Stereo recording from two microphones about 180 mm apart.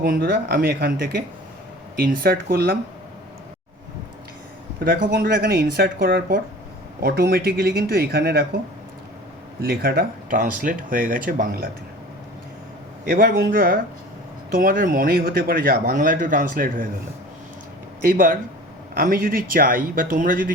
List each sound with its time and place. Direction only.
0.0 s speech: 55° right (ahead or behind)
4.8 s speech: 55° right (ahead or behind)
9.6 s speech: 55° right (ahead or behind)
13.1 s speech: 55° right (ahead or behind)
18.0 s speech: 50° right (ahead or behind)